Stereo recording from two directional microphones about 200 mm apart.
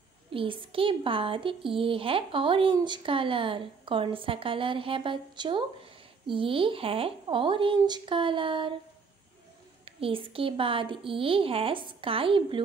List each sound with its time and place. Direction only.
0.3 s a woman's voice: 25° right (ahead or behind)
9.8 s a woman's voice: 30° right (ahead or behind)